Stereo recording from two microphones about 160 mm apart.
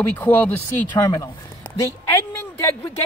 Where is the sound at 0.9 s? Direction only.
25° left (ahead or behind).